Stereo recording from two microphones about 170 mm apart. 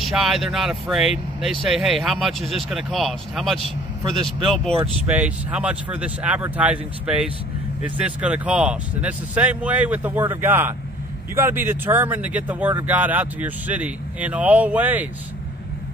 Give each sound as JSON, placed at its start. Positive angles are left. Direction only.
{"t": 0.0, "sound": "speech", "side_deg": 0}
{"t": 4.0, "sound": "a man's voice", "side_deg": -30}
{"t": 5.0, "sound": "speech", "side_deg": -5}